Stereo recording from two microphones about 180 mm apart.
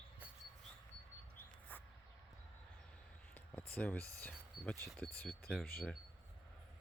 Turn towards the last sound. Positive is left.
turn(degrees=55)  # may be behind; listen again after turning